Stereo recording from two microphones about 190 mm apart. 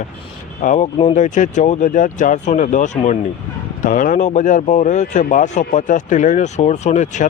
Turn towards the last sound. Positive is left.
turn(degrees=40)  # may be behind; listen again after turning